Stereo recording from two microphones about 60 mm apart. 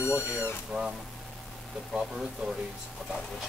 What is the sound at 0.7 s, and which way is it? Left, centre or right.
Speech, centre.